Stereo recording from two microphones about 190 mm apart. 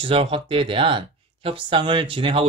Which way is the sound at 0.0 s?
30° right (ahead or behind).